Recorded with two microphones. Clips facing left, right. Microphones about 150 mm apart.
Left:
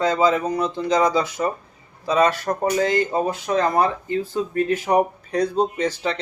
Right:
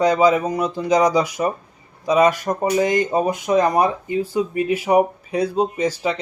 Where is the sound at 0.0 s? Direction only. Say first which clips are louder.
Right 3 dB; 15° right (ahead or behind).